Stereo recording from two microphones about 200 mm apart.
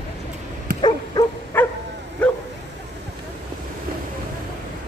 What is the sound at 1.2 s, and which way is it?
Dog, 20° left (ahead or behind).